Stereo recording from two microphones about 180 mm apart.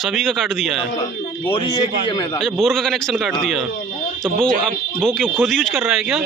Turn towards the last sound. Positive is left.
turn(degrees=-5)  # may be behind; listen again after turning